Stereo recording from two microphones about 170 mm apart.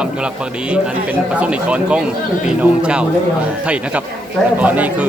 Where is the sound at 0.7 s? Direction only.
5° right (ahead or behind).